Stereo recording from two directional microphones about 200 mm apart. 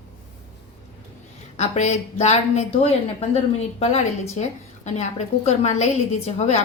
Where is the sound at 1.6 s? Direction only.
35° left (ahead or behind).